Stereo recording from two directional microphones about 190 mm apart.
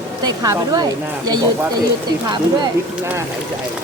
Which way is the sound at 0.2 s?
20° right (ahead or behind).